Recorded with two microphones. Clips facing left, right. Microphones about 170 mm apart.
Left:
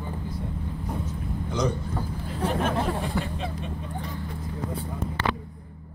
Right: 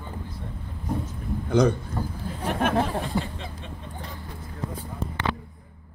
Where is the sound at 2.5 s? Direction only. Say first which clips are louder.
Right 3 dB; 65° right (ahead or behind).